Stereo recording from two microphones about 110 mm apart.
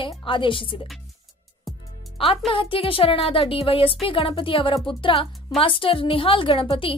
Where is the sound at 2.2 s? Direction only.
60° left (ahead or behind).